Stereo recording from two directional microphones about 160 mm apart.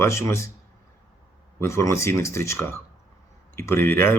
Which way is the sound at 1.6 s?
15° left (ahead or behind).